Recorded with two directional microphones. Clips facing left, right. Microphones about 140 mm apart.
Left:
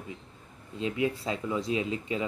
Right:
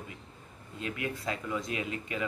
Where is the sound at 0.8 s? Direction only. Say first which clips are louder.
Left 7 dB; 25° left (ahead or behind).